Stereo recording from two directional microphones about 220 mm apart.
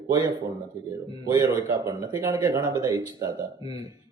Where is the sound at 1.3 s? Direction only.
15° right (ahead or behind).